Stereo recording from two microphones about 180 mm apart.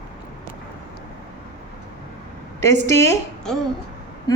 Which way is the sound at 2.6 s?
15° left (ahead or behind).